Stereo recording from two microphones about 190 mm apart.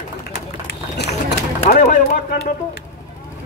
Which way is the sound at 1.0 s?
60° left (ahead or behind).